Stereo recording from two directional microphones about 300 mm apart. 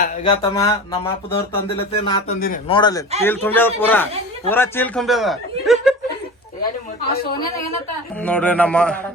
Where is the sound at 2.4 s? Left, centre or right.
Left; by 5.3 s centre.